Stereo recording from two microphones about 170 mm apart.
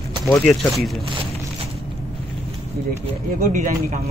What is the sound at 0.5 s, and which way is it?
Speech, centre (ahead or behind).